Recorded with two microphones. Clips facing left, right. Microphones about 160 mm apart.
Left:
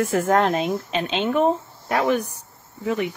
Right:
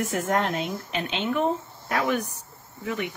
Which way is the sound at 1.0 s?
30° left (ahead or behind).